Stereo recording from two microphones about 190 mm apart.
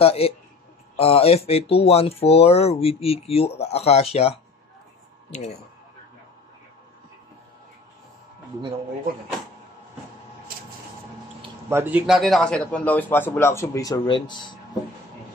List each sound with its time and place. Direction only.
0.0 s speech: 30° left (ahead or behind)
11.7 s a man's voice: 10° right (ahead or behind)
12.2 s a man's voice: centre (ahead or behind); by 14.5 s 25° left (ahead or behind)